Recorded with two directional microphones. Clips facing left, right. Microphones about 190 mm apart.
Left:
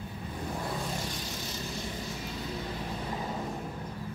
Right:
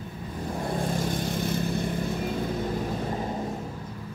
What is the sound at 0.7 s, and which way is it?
Vehicle, 50° right (ahead or behind).